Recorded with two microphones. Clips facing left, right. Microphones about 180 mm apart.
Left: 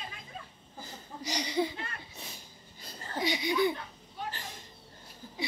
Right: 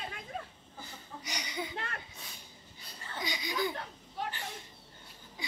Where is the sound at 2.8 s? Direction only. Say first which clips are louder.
Left 7 dB; 40° left (ahead or behind).